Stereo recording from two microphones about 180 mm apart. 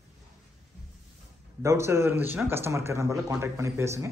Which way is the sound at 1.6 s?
15° right (ahead or behind).